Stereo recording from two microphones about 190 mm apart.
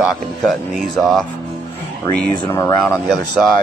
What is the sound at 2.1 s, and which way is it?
Speech, 10° left (ahead or behind).